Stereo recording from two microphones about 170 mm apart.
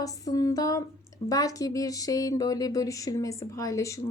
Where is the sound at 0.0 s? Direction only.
20° left (ahead or behind).